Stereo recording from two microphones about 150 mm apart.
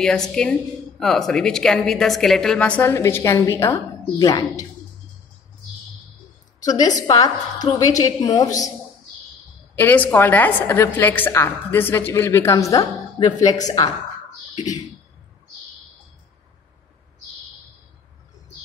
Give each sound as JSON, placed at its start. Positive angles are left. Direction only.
{"t": 0.0, "sound": "a woman's voice", "side_deg": 5}
{"t": 6.6, "sound": "a woman's voice", "side_deg": 25}
{"t": 9.8, "sound": "a woman's voice", "side_deg": 10}